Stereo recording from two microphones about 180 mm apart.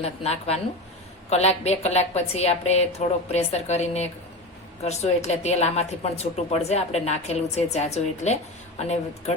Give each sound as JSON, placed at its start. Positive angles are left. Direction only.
{"t": 0.0, "sound": "a woman's voice", "side_deg": 35}